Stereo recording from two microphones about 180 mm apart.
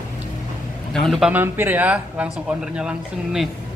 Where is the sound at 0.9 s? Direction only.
Centre (ahead or behind).